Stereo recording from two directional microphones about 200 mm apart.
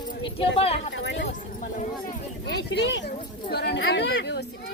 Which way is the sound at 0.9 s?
65° left (ahead or behind).